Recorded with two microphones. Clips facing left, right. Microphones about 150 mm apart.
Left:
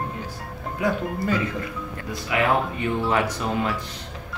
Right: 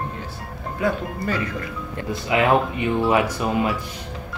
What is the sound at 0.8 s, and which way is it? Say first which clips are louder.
Speech: even; 15° left (ahead or behind).